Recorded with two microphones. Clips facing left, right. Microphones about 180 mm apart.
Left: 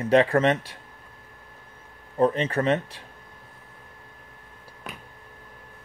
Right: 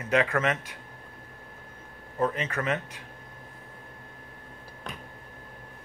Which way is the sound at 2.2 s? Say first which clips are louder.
Left 6 dB; 30° left (ahead or behind).